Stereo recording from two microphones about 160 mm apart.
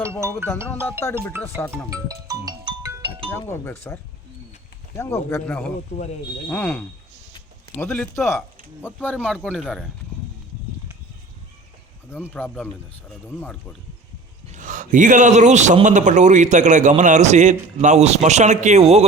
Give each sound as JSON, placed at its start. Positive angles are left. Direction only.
{"t": 0.4, "sound": "speech", "side_deg": 15}
{"t": 2.2, "sound": "music", "side_deg": -25}
{"t": 3.6, "sound": "speech", "side_deg": 15}
{"t": 9.6, "sound": "speech", "side_deg": -5}
{"t": 12.3, "sound": "speech", "side_deg": 10}
{"t": 14.5, "sound": "a man's voice", "side_deg": -55}